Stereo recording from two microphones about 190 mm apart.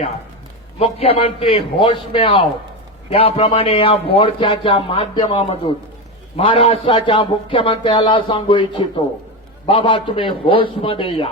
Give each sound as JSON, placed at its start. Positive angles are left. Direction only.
{"t": 0.8, "sound": "speech", "side_deg": 30}
{"t": 9.6, "sound": "speech", "side_deg": 30}